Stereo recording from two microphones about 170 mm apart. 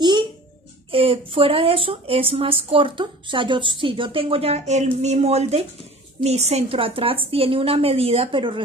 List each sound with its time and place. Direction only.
0.0 s music: 25° right (ahead or behind)
0.9 s speech: 35° right (ahead or behind)